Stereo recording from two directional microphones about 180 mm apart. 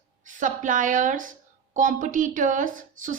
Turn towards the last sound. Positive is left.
turn(degrees=-45)  # may be behind; listen again after turning